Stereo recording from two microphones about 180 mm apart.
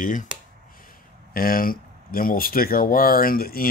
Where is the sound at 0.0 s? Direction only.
45° left (ahead or behind).